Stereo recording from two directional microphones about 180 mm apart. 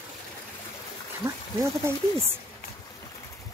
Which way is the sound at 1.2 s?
15° right (ahead or behind).